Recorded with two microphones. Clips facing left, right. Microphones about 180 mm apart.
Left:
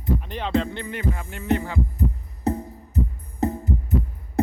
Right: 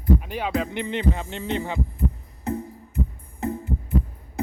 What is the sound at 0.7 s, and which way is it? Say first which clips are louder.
Music: right 3 dB; 20° right (ahead or behind).